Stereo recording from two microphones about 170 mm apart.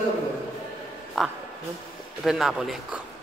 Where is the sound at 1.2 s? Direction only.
Centre (ahead or behind).